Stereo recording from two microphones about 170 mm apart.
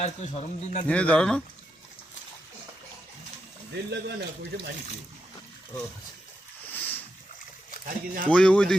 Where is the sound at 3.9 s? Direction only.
75° right (ahead or behind).